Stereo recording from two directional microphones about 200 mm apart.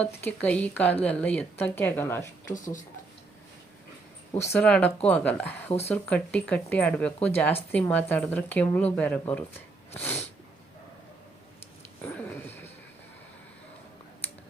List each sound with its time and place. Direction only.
0.0 s speech: 5° left (ahead or behind)
2.5 s speech: 40° left (ahead or behind)
4.4 s speech: 5° left (ahead or behind)
12.0 s a sound: 10° left (ahead or behind)